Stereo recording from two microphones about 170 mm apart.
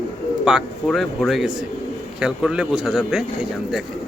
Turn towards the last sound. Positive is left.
turn(degrees=-5)  # may be behind; listen again after turning